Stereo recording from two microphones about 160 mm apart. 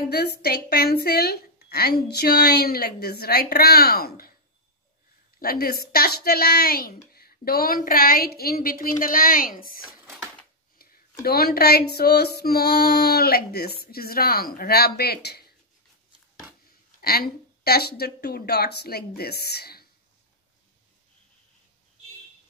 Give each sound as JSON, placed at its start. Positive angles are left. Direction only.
{"t": 0.1, "sound": "a woman's voice", "side_deg": 80}
{"t": 5.4, "sound": "speech", "side_deg": 70}
{"t": 11.2, "sound": "speech", "side_deg": 75}
{"t": 17.0, "sound": "speech", "side_deg": 75}